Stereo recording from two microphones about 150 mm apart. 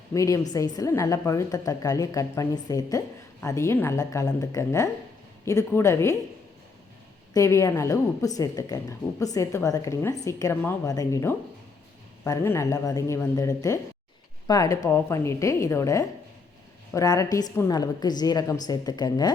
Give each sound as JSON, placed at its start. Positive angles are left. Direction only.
{"t": 0.1, "sound": "a woman's voice", "side_deg": 20}
{"t": 7.3, "sound": "a woman's voice", "side_deg": 20}